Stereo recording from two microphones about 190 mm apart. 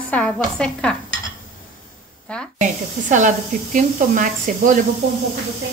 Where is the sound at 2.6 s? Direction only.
40° right (ahead or behind).